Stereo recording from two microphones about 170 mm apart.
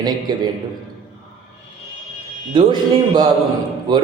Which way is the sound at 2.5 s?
30° right (ahead or behind).